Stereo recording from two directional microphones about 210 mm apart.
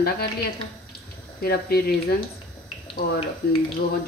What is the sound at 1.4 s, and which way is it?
Speech, 45° left (ahead or behind).